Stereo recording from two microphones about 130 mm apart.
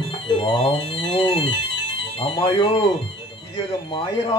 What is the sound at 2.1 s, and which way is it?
Speech, 40° left (ahead or behind).